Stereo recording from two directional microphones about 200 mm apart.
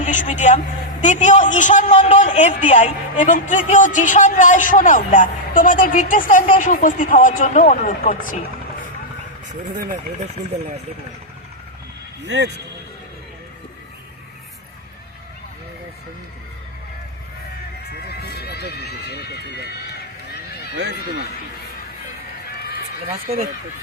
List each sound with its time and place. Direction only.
0.0 s speech: 40° left (ahead or behind)
12.2 s speech: 60° right (ahead or behind)
18.1 s run: 55° left (ahead or behind)